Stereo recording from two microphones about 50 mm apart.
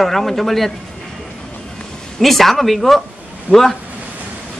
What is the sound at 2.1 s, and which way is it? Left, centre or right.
Speech, centre.